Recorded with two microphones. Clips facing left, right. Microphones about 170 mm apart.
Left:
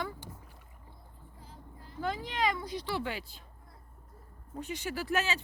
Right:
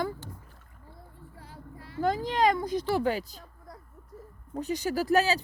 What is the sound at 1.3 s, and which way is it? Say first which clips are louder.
Vehicle: right 5 dB; 75° right (ahead or behind).